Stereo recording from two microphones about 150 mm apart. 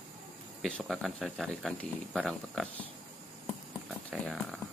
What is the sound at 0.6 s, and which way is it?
Speech, centre (ahead or behind).